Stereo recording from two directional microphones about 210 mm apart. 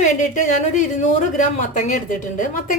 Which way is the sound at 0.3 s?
35° left (ahead or behind).